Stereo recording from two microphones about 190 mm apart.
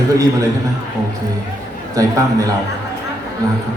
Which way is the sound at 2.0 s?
15° right (ahead or behind).